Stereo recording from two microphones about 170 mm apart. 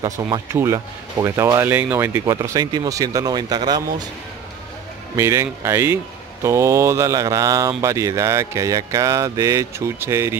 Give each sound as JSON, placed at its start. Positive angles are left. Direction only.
{"t": 0.0, "sound": "speech", "side_deg": -20}
{"t": 5.1, "sound": "speech", "side_deg": -15}